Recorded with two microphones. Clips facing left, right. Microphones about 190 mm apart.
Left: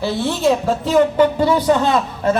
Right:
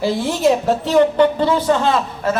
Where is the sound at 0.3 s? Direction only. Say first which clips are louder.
Even; 5° right (ahead or behind).